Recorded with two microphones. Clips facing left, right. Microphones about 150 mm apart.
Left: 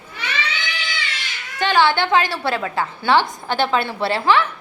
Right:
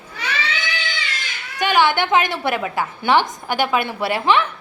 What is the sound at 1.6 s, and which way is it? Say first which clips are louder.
A woman's voice: even; 15° right (ahead or behind).